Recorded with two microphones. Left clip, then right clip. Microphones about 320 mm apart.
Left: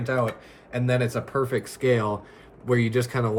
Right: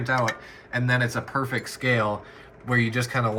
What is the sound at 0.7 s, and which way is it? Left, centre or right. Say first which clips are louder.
Speech: right 1 dB; centre.